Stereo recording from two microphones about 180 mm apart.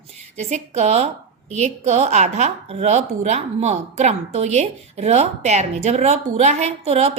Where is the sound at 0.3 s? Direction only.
40° right (ahead or behind).